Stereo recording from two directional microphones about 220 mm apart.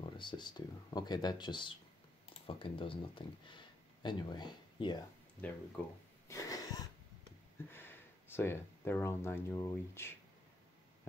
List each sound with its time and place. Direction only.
0.0 s speech: 20° left (ahead or behind)
5.8 s speech: 5° left (ahead or behind)
6.2 s a sound: 15° left (ahead or behind)
7.7 s speech: 10° left (ahead or behind)